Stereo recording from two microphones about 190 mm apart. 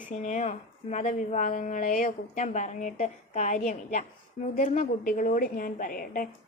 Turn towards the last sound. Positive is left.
turn(degrees=50)  # may be behind; listen again after turning